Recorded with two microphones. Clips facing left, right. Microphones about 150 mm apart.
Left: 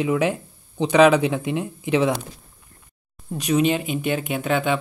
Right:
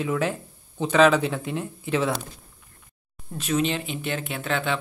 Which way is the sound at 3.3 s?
15° left (ahead or behind).